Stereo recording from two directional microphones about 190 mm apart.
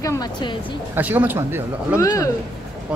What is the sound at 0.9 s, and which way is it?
Speech, 10° right (ahead or behind).